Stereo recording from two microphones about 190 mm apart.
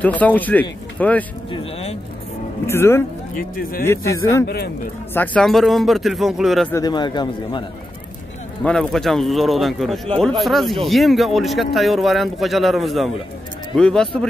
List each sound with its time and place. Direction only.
0.0 s speech: 10° left (ahead or behind)
1.5 s speech: 30° left (ahead or behind)
2.6 s speech: 15° left (ahead or behind)
3.3 s speech: 50° left (ahead or behind)
3.8 s speech: 15° left (ahead or behind); by 6.7 s centre (ahead or behind)
6.7 s speech: 20° left (ahead or behind)
8.6 s speech: centre (ahead or behind)